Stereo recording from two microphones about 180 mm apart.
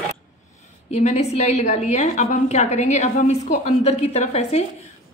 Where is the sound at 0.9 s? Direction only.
40° left (ahead or behind).